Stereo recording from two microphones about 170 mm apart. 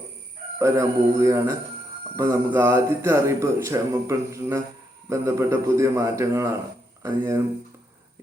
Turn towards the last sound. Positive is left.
turn(degrees=-15)  # may be behind; listen again after turning